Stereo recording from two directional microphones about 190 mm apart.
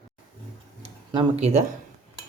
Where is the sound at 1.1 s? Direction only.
35° right (ahead or behind).